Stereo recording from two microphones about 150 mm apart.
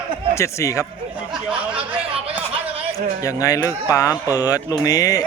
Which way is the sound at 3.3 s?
20° left (ahead or behind).